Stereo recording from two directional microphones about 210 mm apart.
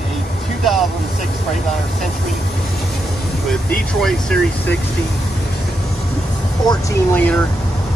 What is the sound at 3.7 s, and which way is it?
Speech, 5° left (ahead or behind).